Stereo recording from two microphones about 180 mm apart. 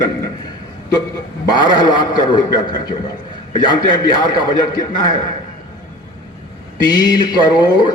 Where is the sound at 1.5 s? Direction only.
25° left (ahead or behind).